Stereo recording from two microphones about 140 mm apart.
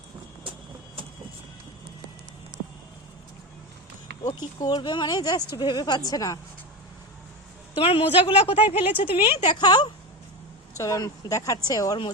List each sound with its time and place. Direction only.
4.6 s speech: 30° left (ahead or behind)
7.8 s a woman's voice: 40° left (ahead or behind)
8.6 s speech: 10° right (ahead or behind)
8.9 s a woman's voice: 40° left (ahead or behind)